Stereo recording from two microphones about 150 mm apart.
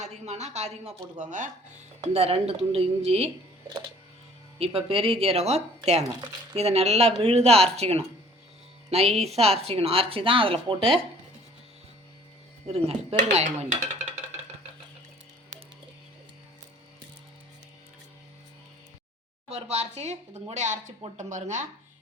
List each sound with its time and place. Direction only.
0.0 s speech: 50° right (ahead or behind)
2.0 s speech: 40° right (ahead or behind)
4.5 s speech: 40° right (ahead or behind)
12.6 s speech: 45° right (ahead or behind)
13.1 s speech: 55° right (ahead or behind)
19.5 s speech: 45° right (ahead or behind)